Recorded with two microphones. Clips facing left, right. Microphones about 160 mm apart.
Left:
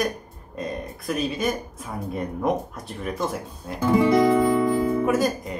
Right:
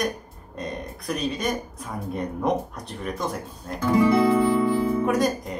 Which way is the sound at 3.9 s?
20° left (ahead or behind).